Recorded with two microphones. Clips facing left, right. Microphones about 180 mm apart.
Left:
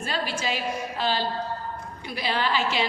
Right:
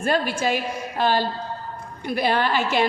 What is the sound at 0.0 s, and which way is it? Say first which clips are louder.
A woman's voice: right 7 dB; 55° right (ahead or behind).